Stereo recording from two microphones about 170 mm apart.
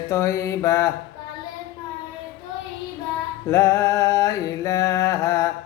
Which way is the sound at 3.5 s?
15° left (ahead or behind).